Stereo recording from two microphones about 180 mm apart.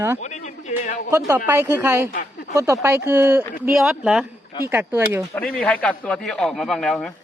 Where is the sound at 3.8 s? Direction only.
Centre (ahead or behind).